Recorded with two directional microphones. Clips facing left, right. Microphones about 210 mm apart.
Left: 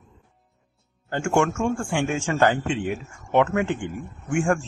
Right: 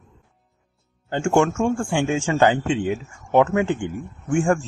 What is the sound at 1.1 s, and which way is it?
Speech, 25° right (ahead or behind).